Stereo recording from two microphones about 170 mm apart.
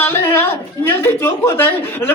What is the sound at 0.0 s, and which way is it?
A woman's voice, 15° left (ahead or behind).